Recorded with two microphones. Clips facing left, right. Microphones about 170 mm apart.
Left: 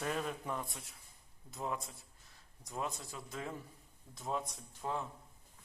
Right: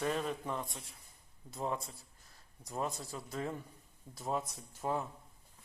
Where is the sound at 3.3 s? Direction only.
Centre (ahead or behind).